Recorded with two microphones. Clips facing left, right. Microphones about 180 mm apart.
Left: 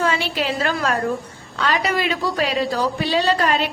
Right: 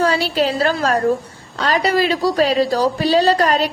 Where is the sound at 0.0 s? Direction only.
35° right (ahead or behind).